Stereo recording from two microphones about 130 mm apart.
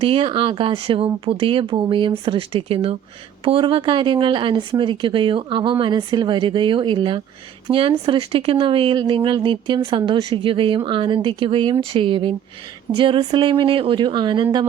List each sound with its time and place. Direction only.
0.0 s speech: 45° right (ahead or behind)